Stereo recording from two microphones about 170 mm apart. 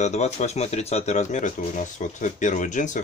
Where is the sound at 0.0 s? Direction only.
40° left (ahead or behind).